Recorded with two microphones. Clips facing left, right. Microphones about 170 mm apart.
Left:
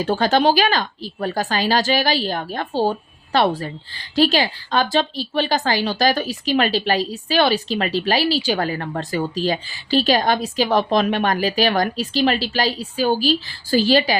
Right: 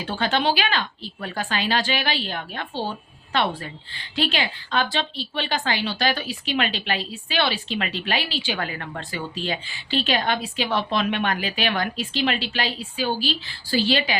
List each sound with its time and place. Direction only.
0.0 s a woman's voice: 40° left (ahead or behind)